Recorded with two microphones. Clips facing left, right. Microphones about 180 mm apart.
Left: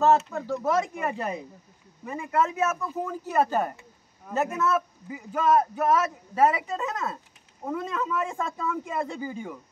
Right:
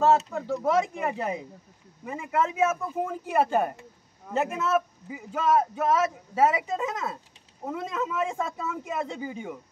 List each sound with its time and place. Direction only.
0.0 s a man's voice: 10° right (ahead or behind)